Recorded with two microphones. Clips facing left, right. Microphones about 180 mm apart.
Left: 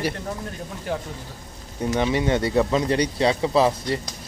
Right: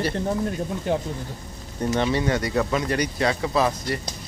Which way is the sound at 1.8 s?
15° left (ahead or behind).